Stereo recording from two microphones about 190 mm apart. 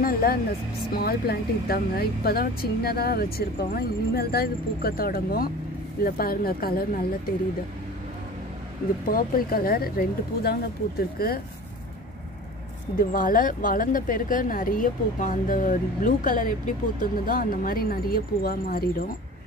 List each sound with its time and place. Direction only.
0.0 s speech: 50° left (ahead or behind)
9.1 s speech: 50° left (ahead or behind)
13.1 s speech: 45° left (ahead or behind)